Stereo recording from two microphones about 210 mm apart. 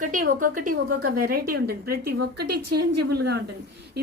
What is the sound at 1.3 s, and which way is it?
A woman's voice, 45° right (ahead or behind).